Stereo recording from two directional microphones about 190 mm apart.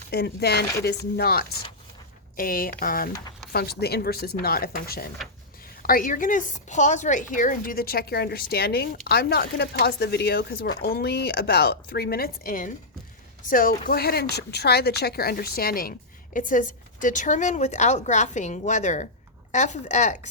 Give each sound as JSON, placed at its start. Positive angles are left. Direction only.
{"t": 0.1, "sound": "a woman's voice", "side_deg": 60}